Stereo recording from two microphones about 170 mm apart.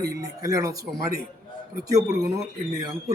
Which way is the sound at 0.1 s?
20° right (ahead or behind).